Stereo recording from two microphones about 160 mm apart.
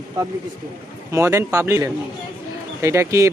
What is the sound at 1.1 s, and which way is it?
A man's voice, 15° right (ahead or behind).